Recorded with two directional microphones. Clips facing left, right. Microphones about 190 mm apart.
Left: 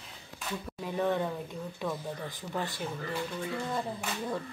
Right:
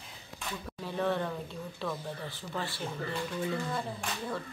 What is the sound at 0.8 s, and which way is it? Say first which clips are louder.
Speech: left 1 dB; 15° left (ahead or behind).